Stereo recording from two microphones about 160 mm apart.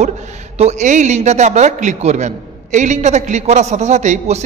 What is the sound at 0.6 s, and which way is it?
A man's voice, 45° right (ahead or behind).